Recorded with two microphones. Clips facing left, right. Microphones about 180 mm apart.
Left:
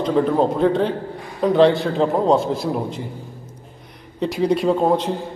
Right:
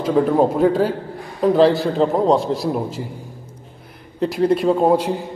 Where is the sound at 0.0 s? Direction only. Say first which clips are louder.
Right 2 dB; 5° right (ahead or behind).